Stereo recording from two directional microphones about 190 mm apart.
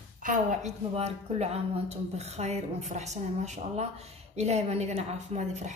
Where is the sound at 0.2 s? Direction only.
40° right (ahead or behind).